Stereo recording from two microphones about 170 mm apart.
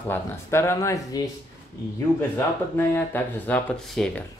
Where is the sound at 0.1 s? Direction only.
15° left (ahead or behind).